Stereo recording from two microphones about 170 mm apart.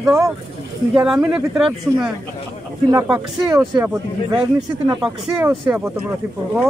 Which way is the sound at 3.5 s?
15° right (ahead or behind).